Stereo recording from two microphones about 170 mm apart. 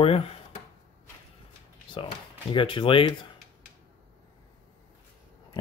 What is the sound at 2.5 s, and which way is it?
Speech, 30° left (ahead or behind).